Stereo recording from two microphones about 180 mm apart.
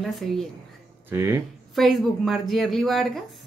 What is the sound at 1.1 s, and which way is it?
Speech, 15° right (ahead or behind).